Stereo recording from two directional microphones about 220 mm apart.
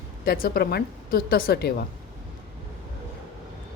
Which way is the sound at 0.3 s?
45° left (ahead or behind).